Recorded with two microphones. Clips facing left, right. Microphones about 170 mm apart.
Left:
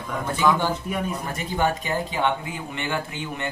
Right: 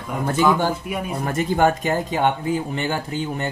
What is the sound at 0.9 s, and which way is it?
Speech, 10° right (ahead or behind).